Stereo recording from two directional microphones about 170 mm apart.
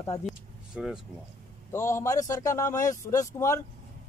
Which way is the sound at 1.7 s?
15° left (ahead or behind).